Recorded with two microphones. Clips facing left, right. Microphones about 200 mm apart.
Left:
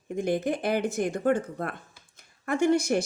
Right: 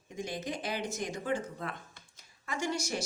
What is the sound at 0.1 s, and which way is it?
A woman's voice, 55° left (ahead or behind).